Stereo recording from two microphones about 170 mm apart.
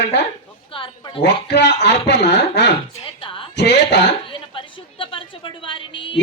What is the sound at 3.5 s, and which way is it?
Speech, 90° left.